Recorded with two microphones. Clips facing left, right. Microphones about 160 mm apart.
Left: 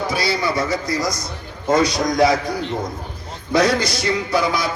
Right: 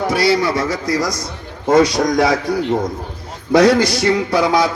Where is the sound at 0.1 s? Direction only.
80° right.